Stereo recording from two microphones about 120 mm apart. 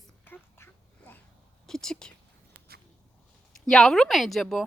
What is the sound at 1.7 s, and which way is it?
Speech, 5° left (ahead or behind).